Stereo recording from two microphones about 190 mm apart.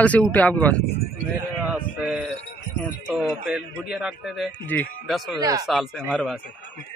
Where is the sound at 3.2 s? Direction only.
5° right (ahead or behind).